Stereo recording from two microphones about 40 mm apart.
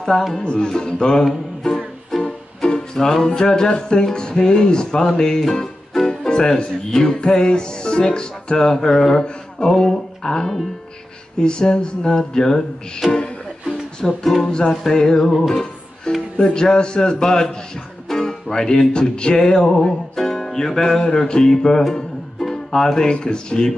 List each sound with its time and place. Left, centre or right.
0.3 s speech: left
2.1 s music: centre
3.3 s speech: centre
13.1 s music: centre
14.4 s speech: centre
16.3 s speech: centre
18.0 s music: centre
21.0 s speech: left
22.4 s music: centre
23.2 s speech: centre